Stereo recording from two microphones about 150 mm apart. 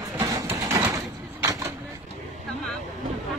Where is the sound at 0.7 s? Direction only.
20° right (ahead or behind).